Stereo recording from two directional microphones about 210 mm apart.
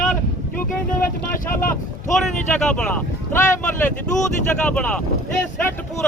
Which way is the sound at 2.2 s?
5° left (ahead or behind).